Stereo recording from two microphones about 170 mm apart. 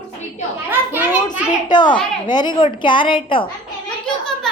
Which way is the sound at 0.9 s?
10° right (ahead or behind).